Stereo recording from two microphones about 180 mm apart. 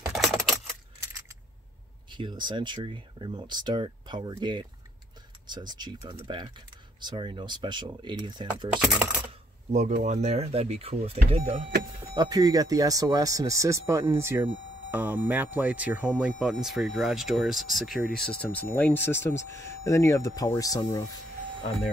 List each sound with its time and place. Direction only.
0.1 s typewriter: centre (ahead or behind)
2.0 s speech: 25° right (ahead or behind)
9.7 s speech: 45° right (ahead or behind)
12.1 s speech: 20° right (ahead or behind); by 21.1 s 20° left (ahead or behind)